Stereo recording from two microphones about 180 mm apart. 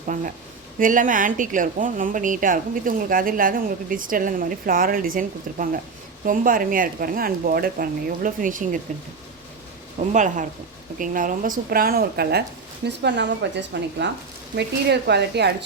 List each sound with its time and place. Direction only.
0.1 s a woman's voice: 45° right (ahead or behind)
10.1 s a woman's voice: 45° right (ahead or behind); by 12.4 s 60° right (ahead or behind)
12.8 s speech: 70° right (ahead or behind)
14.5 s speech: 65° right (ahead or behind)